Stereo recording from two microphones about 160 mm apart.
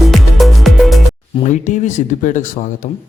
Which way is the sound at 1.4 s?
50° left (ahead or behind).